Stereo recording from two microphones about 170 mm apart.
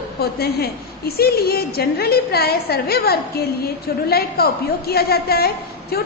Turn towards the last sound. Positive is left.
turn(degrees=65)  # may be behind; listen again after turning